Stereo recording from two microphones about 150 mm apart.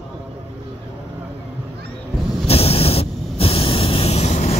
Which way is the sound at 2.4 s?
40° left (ahead or behind).